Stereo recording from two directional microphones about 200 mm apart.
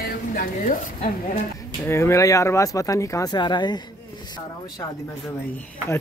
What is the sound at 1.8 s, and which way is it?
Speech, 15° left (ahead or behind).